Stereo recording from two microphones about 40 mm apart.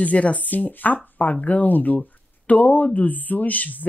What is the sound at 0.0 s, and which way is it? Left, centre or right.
Speech, left.